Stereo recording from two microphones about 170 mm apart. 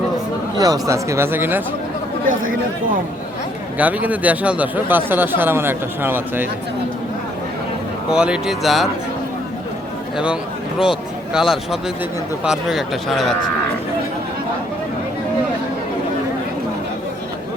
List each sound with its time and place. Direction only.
0.5 s speech: 20° right (ahead or behind)
2.4 s speech: 55° right (ahead or behind)
3.8 s speech: 10° right (ahead or behind)
8.1 s speech: 5° right (ahead or behind)
11.3 s speech: centre (ahead or behind)